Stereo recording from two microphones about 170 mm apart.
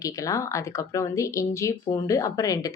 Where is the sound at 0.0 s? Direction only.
20° left (ahead or behind).